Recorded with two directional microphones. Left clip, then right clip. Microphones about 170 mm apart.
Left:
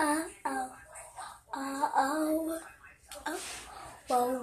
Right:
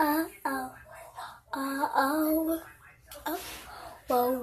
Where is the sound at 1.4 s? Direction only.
25° right (ahead or behind).